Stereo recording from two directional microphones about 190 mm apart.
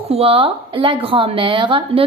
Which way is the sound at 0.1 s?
30° right (ahead or behind).